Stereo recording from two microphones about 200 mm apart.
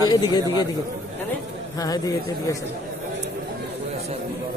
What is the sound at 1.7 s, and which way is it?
Speech, 15° left (ahead or behind).